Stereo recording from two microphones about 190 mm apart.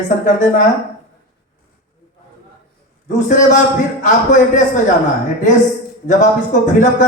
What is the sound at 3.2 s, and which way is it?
Speech, 40° left (ahead or behind).